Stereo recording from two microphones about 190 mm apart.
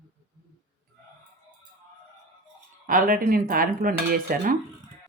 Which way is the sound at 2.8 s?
45° right (ahead or behind).